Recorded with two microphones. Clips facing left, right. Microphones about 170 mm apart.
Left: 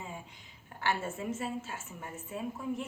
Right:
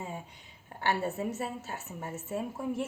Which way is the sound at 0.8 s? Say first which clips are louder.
Right 3 dB; 35° right (ahead or behind).